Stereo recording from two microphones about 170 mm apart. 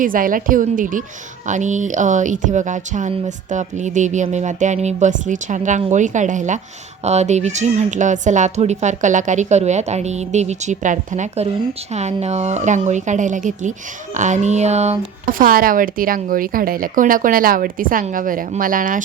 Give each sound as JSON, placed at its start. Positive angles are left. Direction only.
{"t": 0.0, "sound": "speech", "side_deg": -55}